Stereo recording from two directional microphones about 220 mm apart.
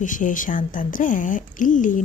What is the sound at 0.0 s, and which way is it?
A woman's voice, 35° left (ahead or behind).